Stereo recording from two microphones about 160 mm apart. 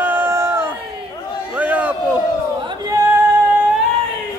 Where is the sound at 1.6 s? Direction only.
10° right (ahead or behind).